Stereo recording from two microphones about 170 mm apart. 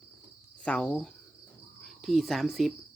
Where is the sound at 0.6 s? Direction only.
5° left (ahead or behind).